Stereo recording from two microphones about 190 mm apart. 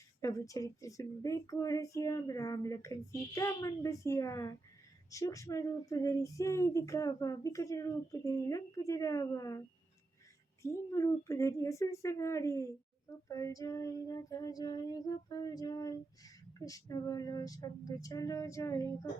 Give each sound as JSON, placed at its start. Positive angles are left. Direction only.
{"t": 0.2, "sound": "speech", "side_deg": 15}
{"t": 13.2, "sound": "female singing", "side_deg": 15}